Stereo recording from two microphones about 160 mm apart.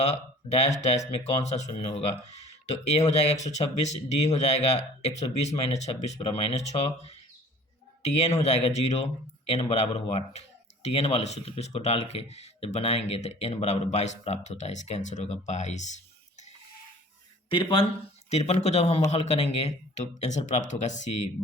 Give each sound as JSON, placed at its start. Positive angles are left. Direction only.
{"t": 0.0, "sound": "speech", "side_deg": 45}
{"t": 17.5, "sound": "speech", "side_deg": 35}